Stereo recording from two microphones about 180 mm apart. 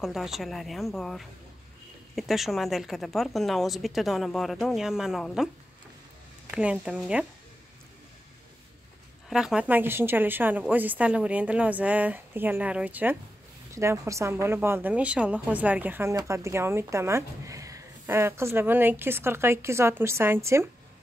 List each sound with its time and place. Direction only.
0.0 s a woman's voice: centre (ahead or behind)
6.5 s a woman's voice: 5° right (ahead or behind)
9.3 s a woman's voice: 5° right (ahead or behind)